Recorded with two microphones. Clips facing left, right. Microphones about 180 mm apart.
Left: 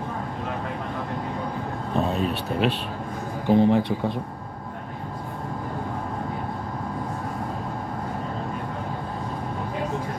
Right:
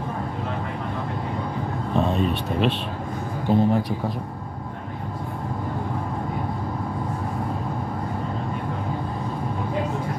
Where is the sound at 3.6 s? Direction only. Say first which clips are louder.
Left 2 dB; 20° left (ahead or behind).